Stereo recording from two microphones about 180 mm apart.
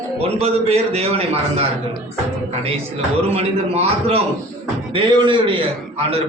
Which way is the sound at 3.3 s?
35° right (ahead or behind).